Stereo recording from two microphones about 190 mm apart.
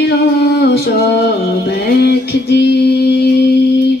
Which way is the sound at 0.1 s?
60° left (ahead or behind).